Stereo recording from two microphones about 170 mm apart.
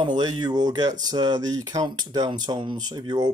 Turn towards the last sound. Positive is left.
turn(degrees=-25)  # may be behind; listen again after turning